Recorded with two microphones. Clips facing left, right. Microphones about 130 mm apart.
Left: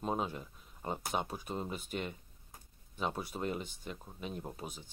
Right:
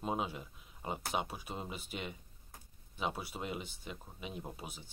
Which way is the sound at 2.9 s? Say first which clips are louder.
Left 1 dB; 5° right (ahead or behind).